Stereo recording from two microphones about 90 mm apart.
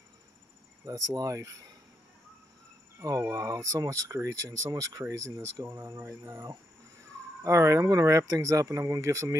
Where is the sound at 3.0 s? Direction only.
40° right (ahead or behind); by 6.4 s 25° right (ahead or behind).